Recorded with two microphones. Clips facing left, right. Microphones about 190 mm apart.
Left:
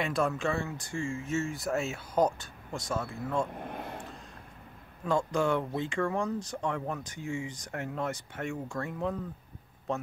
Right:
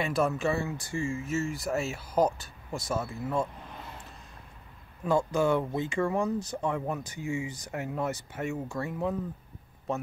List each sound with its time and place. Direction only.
0.0 s speech: 5° right (ahead or behind)
3.5 s vehicle: 55° left (ahead or behind)
5.0 s a man's voice: 5° right (ahead or behind)